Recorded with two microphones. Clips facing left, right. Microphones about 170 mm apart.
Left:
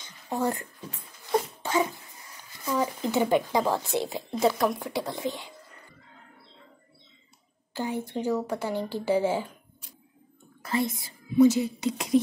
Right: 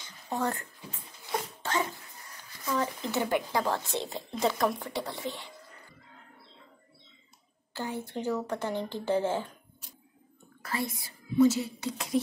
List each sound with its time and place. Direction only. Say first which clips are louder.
0.3 s speech: left 3 dB; 15° left (ahead or behind)
1.6 s a sound: left 2 dB; 15° left (ahead or behind)
2.6 s speech: left 3 dB; 15° left (ahead or behind)
7.7 s speech: left 4 dB; 15° left (ahead or behind)
10.6 s speech: left 6 dB; 20° left (ahead or behind)